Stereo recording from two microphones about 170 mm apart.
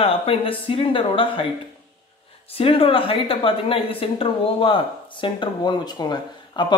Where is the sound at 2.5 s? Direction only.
35° left (ahead or behind).